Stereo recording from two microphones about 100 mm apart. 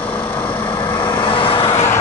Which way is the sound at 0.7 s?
50° left (ahead or behind).